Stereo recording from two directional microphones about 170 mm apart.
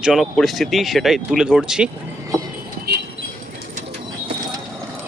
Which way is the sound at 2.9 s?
70° right (ahead or behind).